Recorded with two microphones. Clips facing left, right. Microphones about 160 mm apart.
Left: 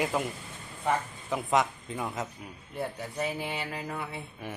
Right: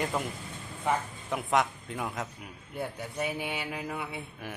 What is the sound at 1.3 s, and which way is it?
A man's voice, centre (ahead or behind).